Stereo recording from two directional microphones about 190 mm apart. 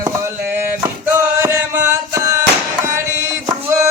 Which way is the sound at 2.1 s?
15° right (ahead or behind).